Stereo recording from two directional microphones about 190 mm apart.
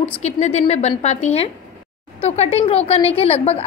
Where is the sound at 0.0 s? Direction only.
35° left (ahead or behind).